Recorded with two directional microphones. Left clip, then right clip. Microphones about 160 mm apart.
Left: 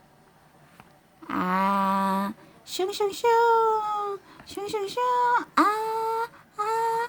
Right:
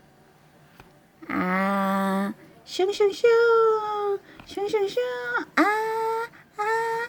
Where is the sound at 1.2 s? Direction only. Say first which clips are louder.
Even; centre (ahead or behind).